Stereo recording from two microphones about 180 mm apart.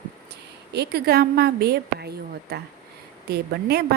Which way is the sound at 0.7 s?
65° right (ahead or behind).